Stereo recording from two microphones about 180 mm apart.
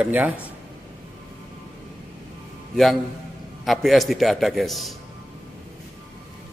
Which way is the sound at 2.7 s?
Centre (ahead or behind).